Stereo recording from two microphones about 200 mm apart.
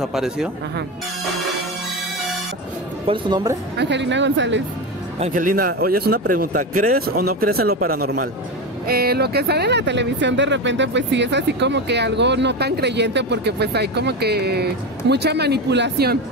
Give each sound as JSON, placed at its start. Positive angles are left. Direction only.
{"t": 0.0, "sound": "speech", "side_deg": 0}
{"t": 3.1, "sound": "speech", "side_deg": -25}
{"t": 3.7, "sound": "speech", "side_deg": -60}
{"t": 5.2, "sound": "a man's voice", "side_deg": -40}